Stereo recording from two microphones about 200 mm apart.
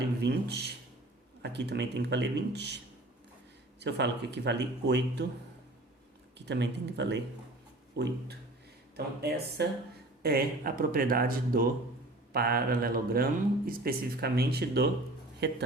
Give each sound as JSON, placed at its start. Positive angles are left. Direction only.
{"t": 0.2, "sound": "a man's voice", "side_deg": -55}
{"t": 3.8, "sound": "a man's voice", "side_deg": -60}
{"t": 6.4, "sound": "a man's voice", "side_deg": -60}